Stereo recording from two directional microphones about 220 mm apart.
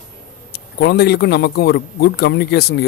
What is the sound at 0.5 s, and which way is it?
A man's voice, 50° left (ahead or behind).